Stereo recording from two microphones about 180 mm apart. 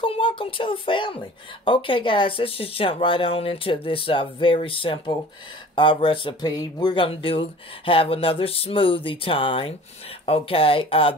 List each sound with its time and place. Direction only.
0.0 s speech: 30° left (ahead or behind)